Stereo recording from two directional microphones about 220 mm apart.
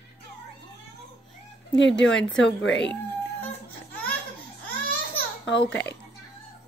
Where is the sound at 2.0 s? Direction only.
55° left (ahead or behind).